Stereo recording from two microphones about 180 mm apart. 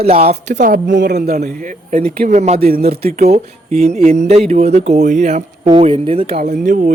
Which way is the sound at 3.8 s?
35° right (ahead or behind).